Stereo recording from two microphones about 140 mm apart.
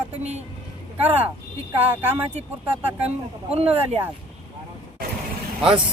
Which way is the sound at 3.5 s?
45° right (ahead or behind).